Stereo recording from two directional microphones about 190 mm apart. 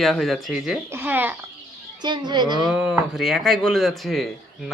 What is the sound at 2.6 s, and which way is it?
Speech, 5° right (ahead or behind).